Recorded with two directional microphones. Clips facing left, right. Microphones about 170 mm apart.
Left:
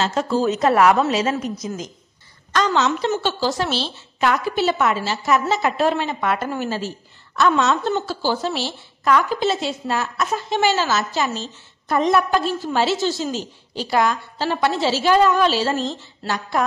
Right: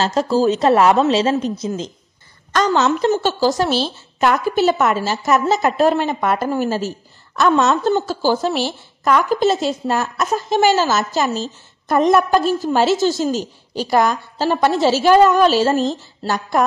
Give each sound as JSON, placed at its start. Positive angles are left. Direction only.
{"t": 0.0, "sound": "a woman's voice", "side_deg": -35}
{"t": 2.5, "sound": "a woman's voice", "side_deg": -45}